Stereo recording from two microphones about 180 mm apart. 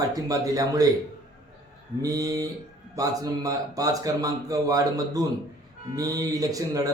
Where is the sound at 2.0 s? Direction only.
20° right (ahead or behind).